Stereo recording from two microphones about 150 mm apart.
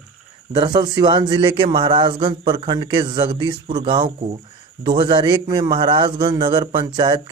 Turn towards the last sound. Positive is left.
turn(degrees=-25)  # may be behind; listen again after turning